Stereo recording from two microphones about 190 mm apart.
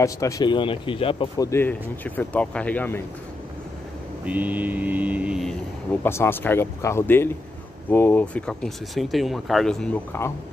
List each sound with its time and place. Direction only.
0.0 s speech: 15° left (ahead or behind)
1.5 s speech: 10° left (ahead or behind)
4.3 s mantra: 10° right (ahead or behind)
6.0 s speech: 15° left (ahead or behind)
10.1 s speech: 10° left (ahead or behind)